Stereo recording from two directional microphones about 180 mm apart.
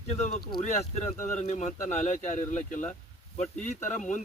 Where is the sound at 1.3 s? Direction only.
40° left (ahead or behind).